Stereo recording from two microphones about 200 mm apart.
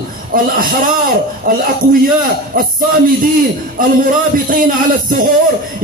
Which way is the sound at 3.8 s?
45° right (ahead or behind).